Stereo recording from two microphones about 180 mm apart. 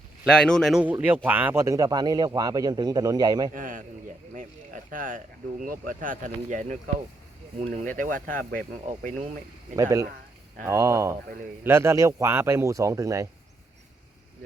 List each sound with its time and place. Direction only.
0.3 s a man's voice: 5° left (ahead or behind); by 3.5 s 20° right (ahead or behind)
3.5 s speech: 50° right (ahead or behind)
8.8 s speech: 40° right (ahead or behind)
9.7 s speech: 20° right (ahead or behind)